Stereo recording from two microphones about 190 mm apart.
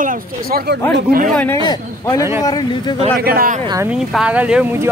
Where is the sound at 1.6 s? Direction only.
20° left (ahead or behind).